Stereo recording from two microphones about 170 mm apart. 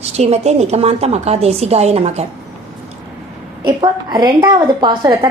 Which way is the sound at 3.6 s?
25° right (ahead or behind).